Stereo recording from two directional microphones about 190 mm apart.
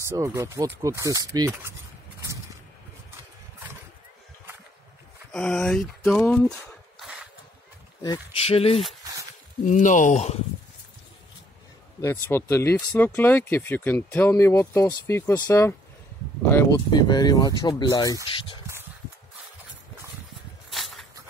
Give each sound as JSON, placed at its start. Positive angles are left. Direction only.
{"t": 0.1, "sound": "speech", "side_deg": -15}
{"t": 5.3, "sound": "speech", "side_deg": 5}
{"t": 7.0, "sound": "a sound", "side_deg": -5}
{"t": 8.0, "sound": "speech", "side_deg": 25}
{"t": 12.0, "sound": "speech", "side_deg": 15}
{"t": 20.7, "sound": "walk", "side_deg": 0}